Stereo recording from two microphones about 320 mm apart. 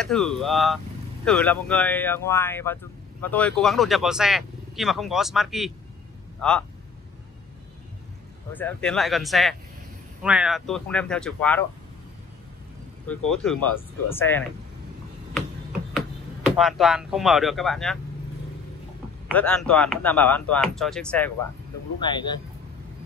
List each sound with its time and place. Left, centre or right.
0.0 s speech: centre
8.5 s speech: centre
13.3 s speech: centre
16.5 s speech: centre
19.2 s speech: centre
22.0 s speech: centre